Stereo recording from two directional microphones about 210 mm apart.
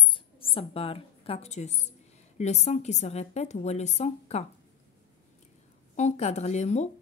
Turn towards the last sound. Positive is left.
turn(degrees=35)  # may be behind; listen again after turning